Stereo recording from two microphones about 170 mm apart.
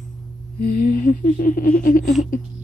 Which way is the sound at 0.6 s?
55° left (ahead or behind).